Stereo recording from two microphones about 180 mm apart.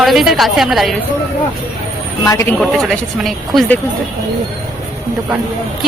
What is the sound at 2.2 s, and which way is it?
Speech, 20° left (ahead or behind).